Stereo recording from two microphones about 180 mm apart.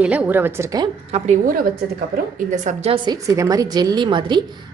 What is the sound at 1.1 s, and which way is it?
Speech, 35° right (ahead or behind).